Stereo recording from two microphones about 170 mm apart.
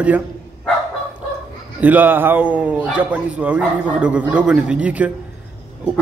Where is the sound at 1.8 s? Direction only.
10° right (ahead or behind).